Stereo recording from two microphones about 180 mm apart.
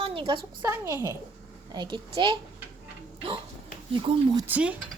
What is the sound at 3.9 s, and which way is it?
Speech, 25° right (ahead or behind).